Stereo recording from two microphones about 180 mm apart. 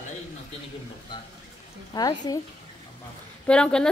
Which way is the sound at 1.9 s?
20° left (ahead or behind).